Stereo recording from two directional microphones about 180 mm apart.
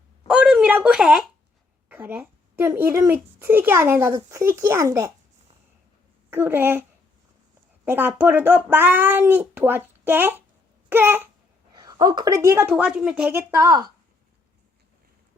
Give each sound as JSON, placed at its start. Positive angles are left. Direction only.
{"t": 0.3, "sound": "a sound", "side_deg": -5}
{"t": 1.9, "sound": "a woman's voice", "side_deg": -10}
{"t": 6.3, "sound": "a woman's voice", "side_deg": -10}
{"t": 7.9, "sound": "a woman's voice", "side_deg": -10}
{"t": 10.8, "sound": "babbling", "side_deg": -10}
{"t": 11.7, "sound": "a woman's voice", "side_deg": -20}